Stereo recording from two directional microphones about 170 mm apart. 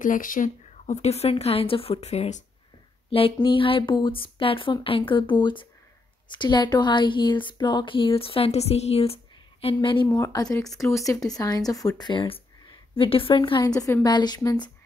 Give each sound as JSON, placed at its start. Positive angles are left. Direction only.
{"t": 0.0, "sound": "a woman's voice", "side_deg": 50}
{"t": 10.0, "sound": "a woman's voice", "side_deg": 20}